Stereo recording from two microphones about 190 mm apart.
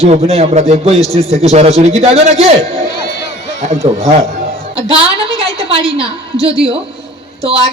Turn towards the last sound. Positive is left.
turn(degrees=-30)  # may be behind; listen again after turning